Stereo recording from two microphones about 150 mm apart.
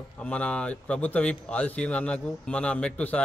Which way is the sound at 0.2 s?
10° left (ahead or behind).